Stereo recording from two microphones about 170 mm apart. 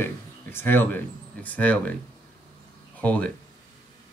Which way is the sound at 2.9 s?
10° left (ahead or behind).